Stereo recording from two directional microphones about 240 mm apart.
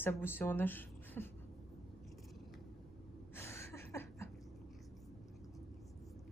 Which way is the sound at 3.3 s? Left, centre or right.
Centre.